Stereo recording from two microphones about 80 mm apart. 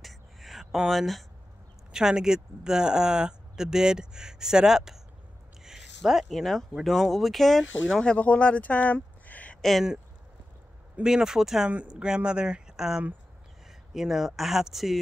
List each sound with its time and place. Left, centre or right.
0.0 s a sound: centre
1.9 s speech: centre
8.0 s speech: centre
9.6 s speech: centre
11.0 s speech: centre